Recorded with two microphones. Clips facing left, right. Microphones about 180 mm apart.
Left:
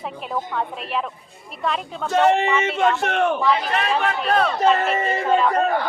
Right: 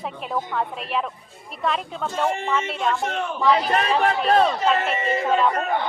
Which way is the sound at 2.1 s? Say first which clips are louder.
Left 7 dB; 75° left (ahead or behind).